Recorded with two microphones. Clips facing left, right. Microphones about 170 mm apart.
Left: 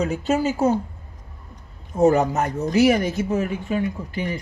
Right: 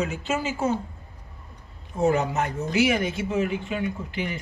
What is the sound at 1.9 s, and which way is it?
Speech, 40° left (ahead or behind).